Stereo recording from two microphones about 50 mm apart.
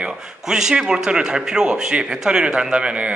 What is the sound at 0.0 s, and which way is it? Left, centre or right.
A man's voice, centre.